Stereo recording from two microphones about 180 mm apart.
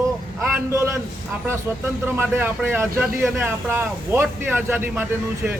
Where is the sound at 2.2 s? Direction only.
10° right (ahead or behind).